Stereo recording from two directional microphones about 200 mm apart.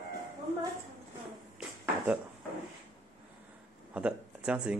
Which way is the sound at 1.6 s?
5° right (ahead or behind).